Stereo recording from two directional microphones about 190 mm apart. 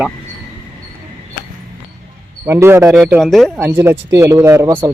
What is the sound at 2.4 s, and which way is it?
Speech, 15° right (ahead or behind).